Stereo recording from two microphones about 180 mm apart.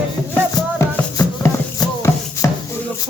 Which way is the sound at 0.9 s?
15° left (ahead or behind).